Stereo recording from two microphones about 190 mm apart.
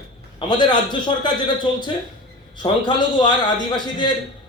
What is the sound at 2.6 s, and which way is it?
A man's voice, 25° left (ahead or behind).